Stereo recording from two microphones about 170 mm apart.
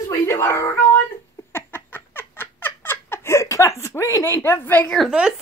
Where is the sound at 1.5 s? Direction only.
15° left (ahead or behind); by 5.3 s 5° right (ahead or behind).